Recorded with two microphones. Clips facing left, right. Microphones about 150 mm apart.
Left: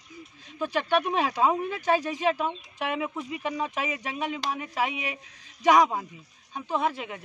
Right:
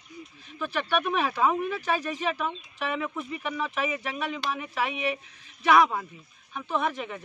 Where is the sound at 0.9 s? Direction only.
20° left (ahead or behind).